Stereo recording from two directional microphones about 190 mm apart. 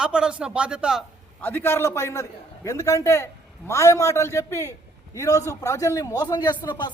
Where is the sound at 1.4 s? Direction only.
10° left (ahead or behind).